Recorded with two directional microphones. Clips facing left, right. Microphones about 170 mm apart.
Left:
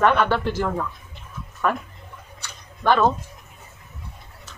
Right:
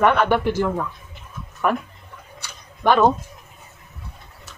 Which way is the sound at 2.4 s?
15° right (ahead or behind).